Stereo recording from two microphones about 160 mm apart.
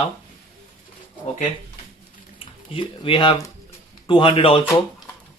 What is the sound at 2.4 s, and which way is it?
Speech, 35° left (ahead or behind).